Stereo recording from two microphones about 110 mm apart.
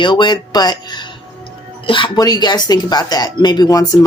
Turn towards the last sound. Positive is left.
turn(degrees=35)  # may be behind; listen again after turning